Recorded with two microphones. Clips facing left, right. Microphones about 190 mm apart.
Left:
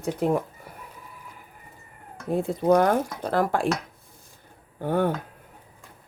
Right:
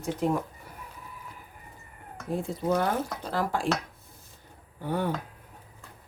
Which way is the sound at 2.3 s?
60° left (ahead or behind).